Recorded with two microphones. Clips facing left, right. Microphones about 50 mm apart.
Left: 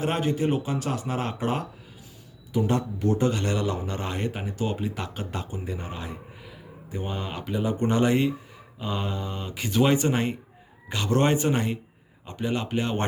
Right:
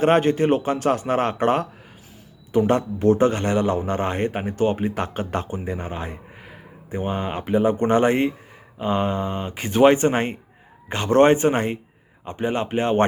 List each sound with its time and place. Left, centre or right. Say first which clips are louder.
0.0 s a man's voice: right 8 dB; right